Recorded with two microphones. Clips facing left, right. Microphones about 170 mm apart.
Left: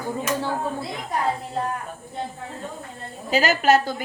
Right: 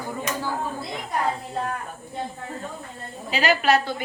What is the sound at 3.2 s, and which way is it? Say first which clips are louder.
Speech: left 2 dB; 40° left (ahead or behind).